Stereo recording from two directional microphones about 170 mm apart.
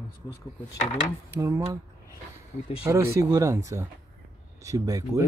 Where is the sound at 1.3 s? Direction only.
15° right (ahead or behind).